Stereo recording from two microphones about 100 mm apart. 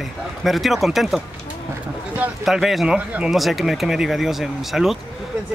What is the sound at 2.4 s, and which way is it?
Speech, centre (ahead or behind).